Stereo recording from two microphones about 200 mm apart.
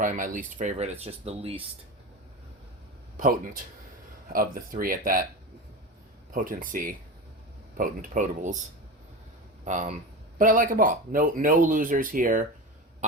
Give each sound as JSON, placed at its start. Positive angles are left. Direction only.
{"t": 0.0, "sound": "speech", "side_deg": -40}
{"t": 3.2, "sound": "speech", "side_deg": -45}
{"t": 6.3, "sound": "speech", "side_deg": -45}
{"t": 9.6, "sound": "speech", "side_deg": -40}